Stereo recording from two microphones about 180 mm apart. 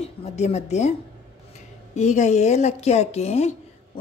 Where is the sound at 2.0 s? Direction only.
40° left (ahead or behind).